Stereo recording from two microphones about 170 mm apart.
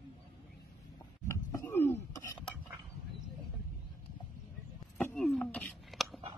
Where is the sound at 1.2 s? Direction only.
15° left (ahead or behind).